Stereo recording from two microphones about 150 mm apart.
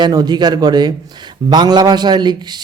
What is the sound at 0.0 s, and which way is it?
A man's voice, 25° right (ahead or behind).